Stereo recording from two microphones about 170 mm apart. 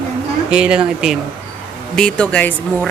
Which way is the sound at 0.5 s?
5° right (ahead or behind).